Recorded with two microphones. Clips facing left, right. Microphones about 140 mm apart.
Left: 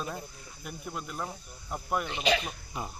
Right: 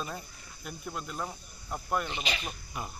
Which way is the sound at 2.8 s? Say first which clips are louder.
Left 2 dB; 25° left (ahead or behind).